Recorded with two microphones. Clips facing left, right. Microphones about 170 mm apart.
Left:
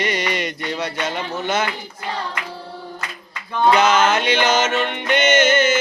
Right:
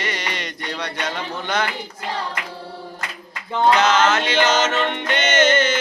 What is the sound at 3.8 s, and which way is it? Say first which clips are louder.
Music: left 1 dB; 10° left (ahead or behind).